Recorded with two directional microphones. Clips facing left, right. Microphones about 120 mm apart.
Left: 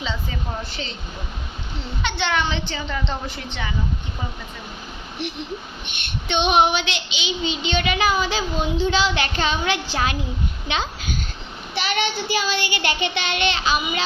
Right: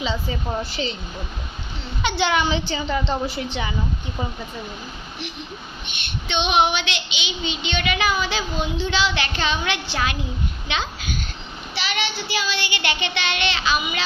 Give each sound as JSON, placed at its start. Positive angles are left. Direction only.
{"t": 0.6, "sound": "speech", "side_deg": -5}
{"t": 2.0, "sound": "a woman's voice", "side_deg": -5}
{"t": 6.2, "sound": "a child's voice", "side_deg": 45}
{"t": 11.7, "sound": "child singing", "side_deg": 50}